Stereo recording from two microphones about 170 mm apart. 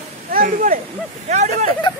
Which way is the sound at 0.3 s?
55° right (ahead or behind).